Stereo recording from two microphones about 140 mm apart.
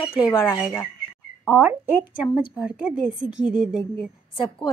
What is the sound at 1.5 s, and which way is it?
A woman's voice, 15° right (ahead or behind).